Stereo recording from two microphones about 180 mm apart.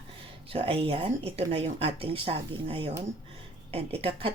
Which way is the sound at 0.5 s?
30° right (ahead or behind).